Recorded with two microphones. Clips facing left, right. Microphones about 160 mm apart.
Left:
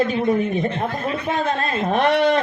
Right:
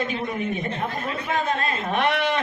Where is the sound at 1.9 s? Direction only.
35° left (ahead or behind).